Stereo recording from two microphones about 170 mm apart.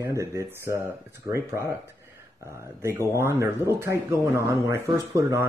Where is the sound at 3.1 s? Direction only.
15° right (ahead or behind).